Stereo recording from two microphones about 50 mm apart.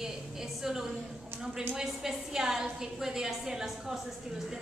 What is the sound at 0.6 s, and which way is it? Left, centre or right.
A woman's voice, centre.